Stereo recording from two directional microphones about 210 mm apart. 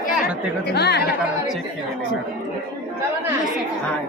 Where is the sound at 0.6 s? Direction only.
50° left (ahead or behind).